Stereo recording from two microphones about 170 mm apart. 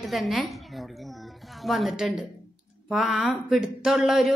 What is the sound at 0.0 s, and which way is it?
A woman's voice, centre (ahead or behind).